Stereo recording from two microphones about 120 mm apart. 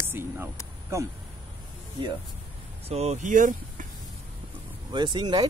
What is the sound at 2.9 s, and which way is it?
Speech, 65° right (ahead or behind).